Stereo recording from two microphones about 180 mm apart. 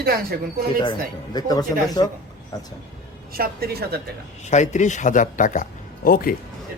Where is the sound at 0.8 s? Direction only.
25° left (ahead or behind).